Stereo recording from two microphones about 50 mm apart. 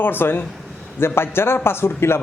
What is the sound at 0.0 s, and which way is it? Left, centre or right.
A man's voice, left.